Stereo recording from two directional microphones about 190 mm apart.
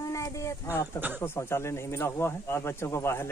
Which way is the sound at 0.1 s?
15° left (ahead or behind).